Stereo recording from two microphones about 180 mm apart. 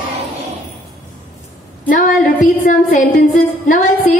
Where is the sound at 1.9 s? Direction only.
45° left (ahead or behind).